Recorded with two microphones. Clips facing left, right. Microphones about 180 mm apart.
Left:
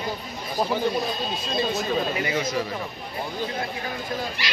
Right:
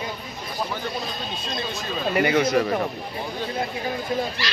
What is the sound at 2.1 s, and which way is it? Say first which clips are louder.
Speech: right 6 dB; 65° right (ahead or behind).